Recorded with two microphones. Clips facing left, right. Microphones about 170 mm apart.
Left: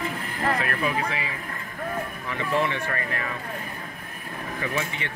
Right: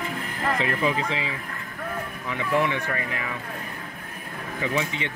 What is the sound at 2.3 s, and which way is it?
Speech, 15° right (ahead or behind).